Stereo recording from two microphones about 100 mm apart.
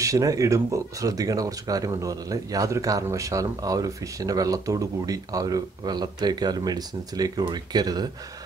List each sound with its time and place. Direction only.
0.0 s speech: 35° right (ahead or behind)